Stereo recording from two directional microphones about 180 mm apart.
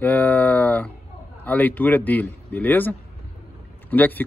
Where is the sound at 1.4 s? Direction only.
10° left (ahead or behind).